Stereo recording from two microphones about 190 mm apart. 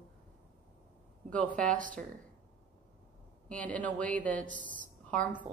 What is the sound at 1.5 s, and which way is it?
Speech, 45° right (ahead or behind).